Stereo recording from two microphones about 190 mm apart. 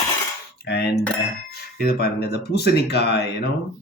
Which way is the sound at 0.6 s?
60° left (ahead or behind).